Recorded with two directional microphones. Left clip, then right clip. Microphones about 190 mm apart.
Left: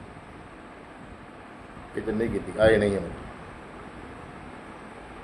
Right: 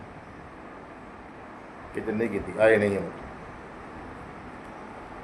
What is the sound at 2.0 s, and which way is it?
Speech, 5° left (ahead or behind).